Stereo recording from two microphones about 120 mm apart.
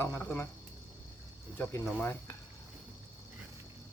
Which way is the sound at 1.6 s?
15° left (ahead or behind).